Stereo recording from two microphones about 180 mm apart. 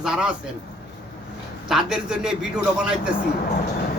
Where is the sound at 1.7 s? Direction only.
5° right (ahead or behind).